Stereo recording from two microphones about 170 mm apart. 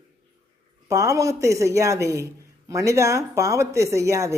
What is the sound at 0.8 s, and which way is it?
A man's voice, 15° right (ahead or behind).